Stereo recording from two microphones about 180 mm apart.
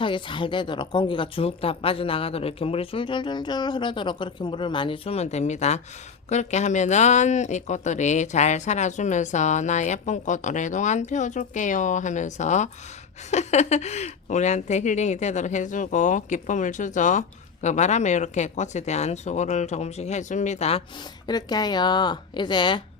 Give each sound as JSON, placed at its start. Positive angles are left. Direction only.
{"t": 0.0, "sound": "a woman's voice", "side_deg": 25}
{"t": 21.2, "sound": "a woman's voice", "side_deg": 25}